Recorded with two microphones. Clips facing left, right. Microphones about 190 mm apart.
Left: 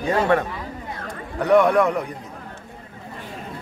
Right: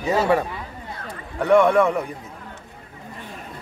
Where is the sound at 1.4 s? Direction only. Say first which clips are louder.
Even; centre (ahead or behind).